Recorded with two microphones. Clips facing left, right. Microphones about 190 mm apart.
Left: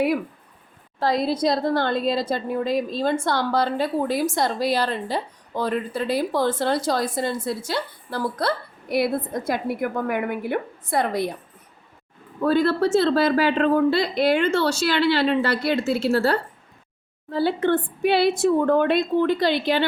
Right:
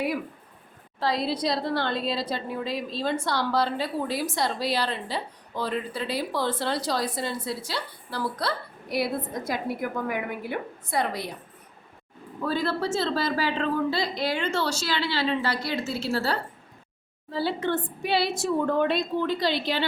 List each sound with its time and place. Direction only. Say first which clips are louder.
0.9 s a woman's voice: left 5 dB; 50° left (ahead or behind)
12.5 s a woman's voice: left 8 dB; 60° left (ahead or behind)